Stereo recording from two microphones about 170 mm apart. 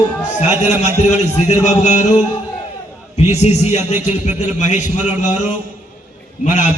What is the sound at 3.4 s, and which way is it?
A man's voice, 40° left (ahead or behind).